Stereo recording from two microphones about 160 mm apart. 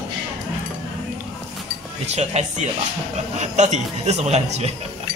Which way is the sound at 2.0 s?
45° right (ahead or behind).